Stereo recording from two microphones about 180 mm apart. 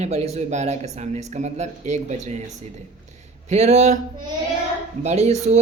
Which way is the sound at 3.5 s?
40° right (ahead or behind).